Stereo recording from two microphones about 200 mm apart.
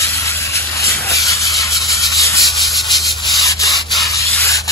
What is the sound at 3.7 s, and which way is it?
Rub, centre (ahead or behind).